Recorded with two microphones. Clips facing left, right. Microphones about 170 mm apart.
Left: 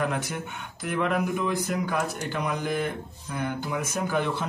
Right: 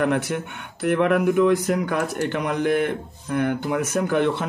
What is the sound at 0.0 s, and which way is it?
Speech, 65° right (ahead or behind).